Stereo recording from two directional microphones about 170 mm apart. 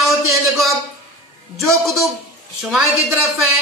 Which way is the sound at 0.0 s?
Centre (ahead or behind).